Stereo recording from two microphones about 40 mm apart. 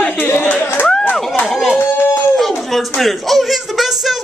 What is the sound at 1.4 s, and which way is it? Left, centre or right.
Speech, centre.